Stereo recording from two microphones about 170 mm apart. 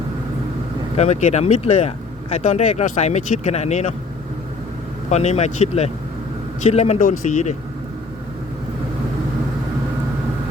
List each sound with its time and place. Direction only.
0.9 s speech: 40° left (ahead or behind)
5.1 s a man's voice: 40° left (ahead or behind)